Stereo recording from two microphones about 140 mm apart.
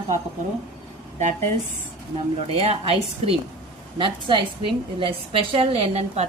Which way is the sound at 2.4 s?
45° right (ahead or behind).